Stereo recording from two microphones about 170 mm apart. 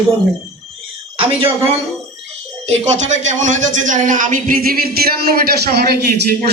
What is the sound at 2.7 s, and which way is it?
A man's voice, 45° right (ahead or behind).